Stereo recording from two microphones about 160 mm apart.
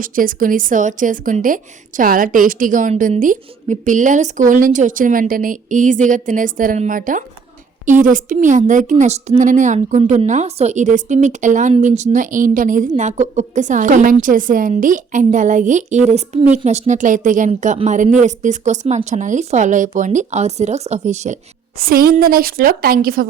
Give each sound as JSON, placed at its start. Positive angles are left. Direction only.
{"t": 0.0, "sound": "a woman's voice", "side_deg": -60}
{"t": 21.8, "sound": "a woman's voice", "side_deg": -65}